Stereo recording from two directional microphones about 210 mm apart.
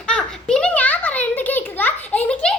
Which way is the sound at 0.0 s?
5° left (ahead or behind).